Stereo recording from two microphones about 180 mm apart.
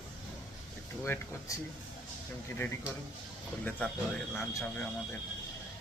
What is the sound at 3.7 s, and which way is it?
Speech, 10° left (ahead or behind).